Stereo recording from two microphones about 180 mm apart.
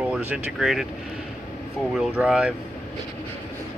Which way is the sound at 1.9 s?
5° right (ahead or behind).